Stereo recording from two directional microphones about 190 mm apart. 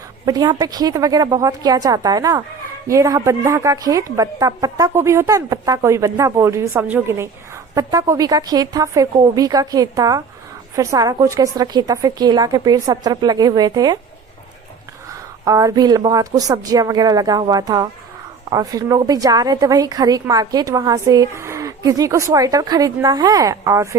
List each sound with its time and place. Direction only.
0.3 s a woman's voice: 20° right (ahead or behind)
15.4 s a woman's voice: 15° right (ahead or behind)